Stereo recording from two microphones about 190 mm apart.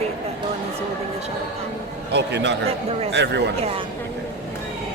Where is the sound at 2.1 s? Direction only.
65° right (ahead or behind).